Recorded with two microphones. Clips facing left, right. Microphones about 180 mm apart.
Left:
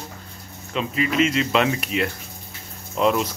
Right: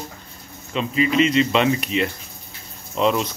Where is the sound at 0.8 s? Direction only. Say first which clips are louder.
Right 2 dB; centre (ahead or behind).